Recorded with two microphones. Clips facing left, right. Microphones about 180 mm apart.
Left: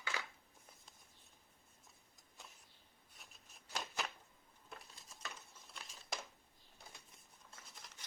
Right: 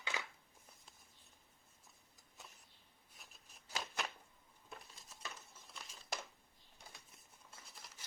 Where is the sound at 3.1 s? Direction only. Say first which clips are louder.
Even; centre (ahead or behind).